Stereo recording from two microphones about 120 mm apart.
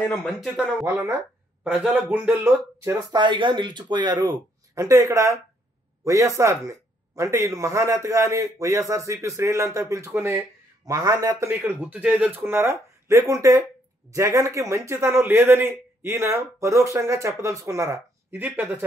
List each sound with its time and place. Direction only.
0.0 s speech: 5° left (ahead or behind)
0.8 s a man's voice: 25° right (ahead or behind)
1.6 s speech: 10° right (ahead or behind)
3.1 s a man's voice: 40° right (ahead or behind)
18.3 s speech: 15° right (ahead or behind)